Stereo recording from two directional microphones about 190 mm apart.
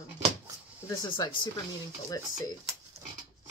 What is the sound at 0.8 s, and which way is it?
Speech, 20° left (ahead or behind).